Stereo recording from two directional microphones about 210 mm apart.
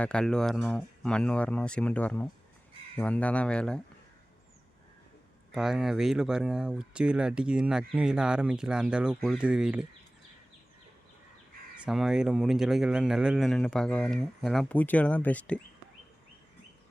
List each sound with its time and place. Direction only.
0.0 s speech: 5° left (ahead or behind)
5.5 s speech: centre (ahead or behind)
11.9 s speech: centre (ahead or behind)